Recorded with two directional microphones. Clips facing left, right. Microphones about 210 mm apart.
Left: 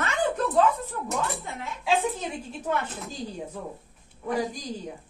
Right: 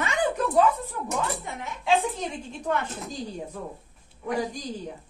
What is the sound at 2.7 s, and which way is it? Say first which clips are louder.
Speech: right 1 dB; 5° left (ahead or behind).